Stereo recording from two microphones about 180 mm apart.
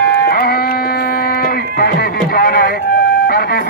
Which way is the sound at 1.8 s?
55° left (ahead or behind).